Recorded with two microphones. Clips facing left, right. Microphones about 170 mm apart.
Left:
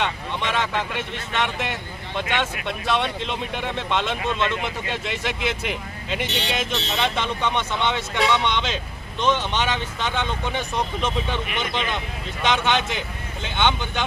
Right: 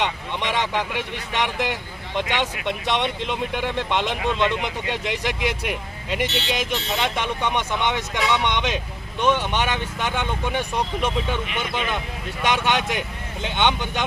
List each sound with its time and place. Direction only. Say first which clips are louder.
0.0 s a man's voice: even; 15° right (ahead or behind)